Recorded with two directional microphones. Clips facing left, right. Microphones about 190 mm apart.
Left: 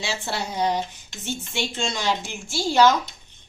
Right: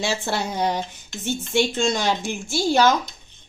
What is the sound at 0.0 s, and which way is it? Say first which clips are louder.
A woman's voice: right 4 dB; 50° right (ahead or behind).